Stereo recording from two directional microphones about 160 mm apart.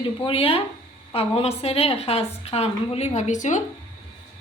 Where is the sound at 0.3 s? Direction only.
35° left (ahead or behind).